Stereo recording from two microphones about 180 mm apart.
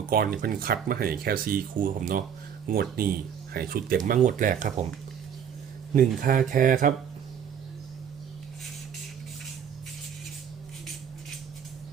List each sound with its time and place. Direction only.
0.1 s speech: 55° right (ahead or behind)
5.9 s speech: 45° right (ahead or behind)